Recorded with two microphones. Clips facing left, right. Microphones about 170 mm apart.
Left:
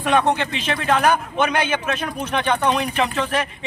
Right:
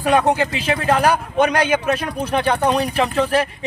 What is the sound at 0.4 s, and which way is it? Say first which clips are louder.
A man's voice: right 4 dB; 35° right (ahead or behind).